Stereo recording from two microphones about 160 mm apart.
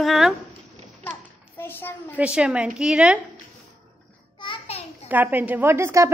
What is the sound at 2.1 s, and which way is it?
A woman's voice, 5° right (ahead or behind).